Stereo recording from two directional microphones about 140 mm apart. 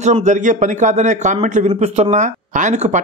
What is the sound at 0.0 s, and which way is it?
A man's voice, 55° right (ahead or behind).